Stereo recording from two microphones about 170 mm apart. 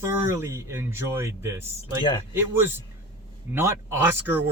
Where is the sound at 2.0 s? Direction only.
25° left (ahead or behind).